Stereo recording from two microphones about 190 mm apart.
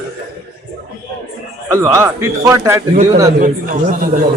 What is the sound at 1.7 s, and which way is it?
Speech, 15° right (ahead or behind).